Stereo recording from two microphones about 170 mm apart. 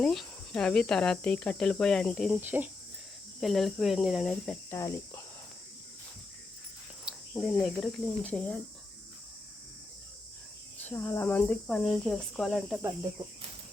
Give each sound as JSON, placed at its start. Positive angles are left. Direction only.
{"t": 0.0, "sound": "speech", "side_deg": 0}
{"t": 2.4, "sound": "speech", "side_deg": -10}
{"t": 3.4, "sound": "speech", "side_deg": 0}
{"t": 4.7, "sound": "speech", "side_deg": 15}
{"t": 7.3, "sound": "speech", "side_deg": 0}
{"t": 10.8, "sound": "speech", "side_deg": 10}